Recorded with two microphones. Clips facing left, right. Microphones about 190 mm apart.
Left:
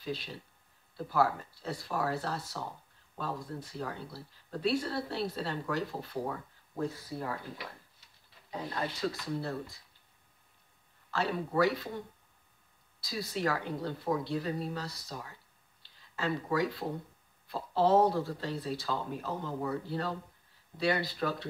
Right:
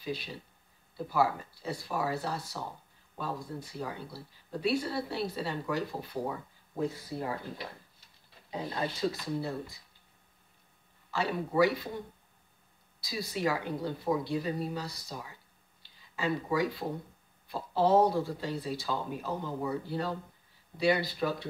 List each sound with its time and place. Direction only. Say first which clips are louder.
0.0 s speech: right 1 dB; 5° right (ahead or behind)
8.5 s speech: right 2 dB; 20° right (ahead or behind)
9.2 s speech: right 1 dB; 5° right (ahead or behind)
11.1 s speech: right 1 dB; 10° right (ahead or behind)
13.0 s speech: right 1 dB; 5° right (ahead or behind)